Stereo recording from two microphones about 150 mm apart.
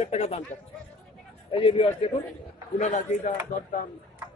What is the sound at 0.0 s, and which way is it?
Speech, 45° left (ahead or behind).